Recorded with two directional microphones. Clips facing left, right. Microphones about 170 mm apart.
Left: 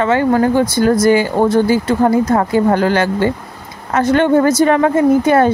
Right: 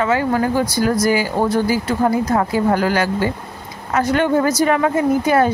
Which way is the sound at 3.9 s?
50° left (ahead or behind).